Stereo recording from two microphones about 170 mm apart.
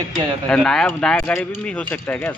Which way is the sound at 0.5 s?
5° left (ahead or behind).